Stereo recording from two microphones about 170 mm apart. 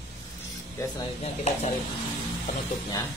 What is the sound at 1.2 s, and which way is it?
Speech, 40° left (ahead or behind).